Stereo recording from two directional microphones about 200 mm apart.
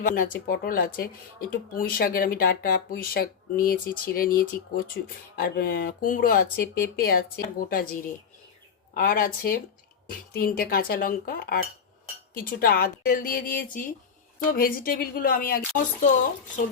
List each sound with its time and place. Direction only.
0.0 s speech: 45° left (ahead or behind)
9.0 s speech: 45° left (ahead or behind)